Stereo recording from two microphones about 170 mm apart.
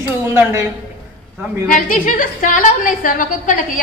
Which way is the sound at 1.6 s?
55° left (ahead or behind).